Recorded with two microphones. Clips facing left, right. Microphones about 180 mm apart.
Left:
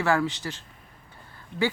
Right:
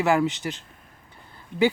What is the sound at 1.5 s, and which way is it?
Speech, 50° right (ahead or behind).